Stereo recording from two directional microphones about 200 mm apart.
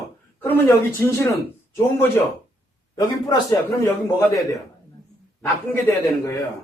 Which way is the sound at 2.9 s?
20° left (ahead or behind).